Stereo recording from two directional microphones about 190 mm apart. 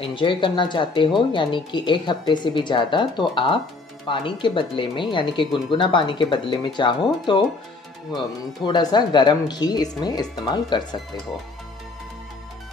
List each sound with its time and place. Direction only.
0.0 s speech: 25° left (ahead or behind)